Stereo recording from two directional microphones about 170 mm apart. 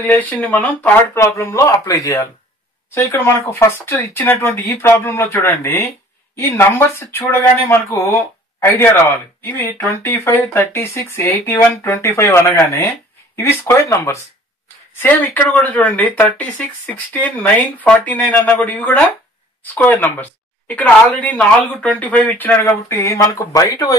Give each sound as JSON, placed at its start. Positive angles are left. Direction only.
{"t": 0.0, "sound": "speech", "side_deg": 10}